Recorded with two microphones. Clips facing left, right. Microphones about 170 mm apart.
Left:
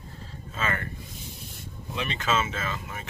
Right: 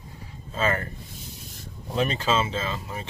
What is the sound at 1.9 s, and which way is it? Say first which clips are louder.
Speech: right 4 dB; 35° right (ahead or behind).